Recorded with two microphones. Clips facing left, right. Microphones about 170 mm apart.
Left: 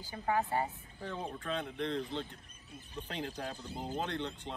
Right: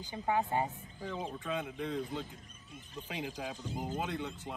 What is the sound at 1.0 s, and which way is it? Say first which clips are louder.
Speech: right 1 dB; 5° right (ahead or behind).